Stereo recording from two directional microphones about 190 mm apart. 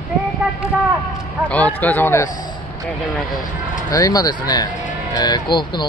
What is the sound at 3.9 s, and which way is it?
Speech, 20° left (ahead or behind).